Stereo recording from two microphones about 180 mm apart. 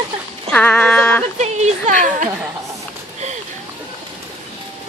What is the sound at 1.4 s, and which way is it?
Speech, 40° right (ahead or behind).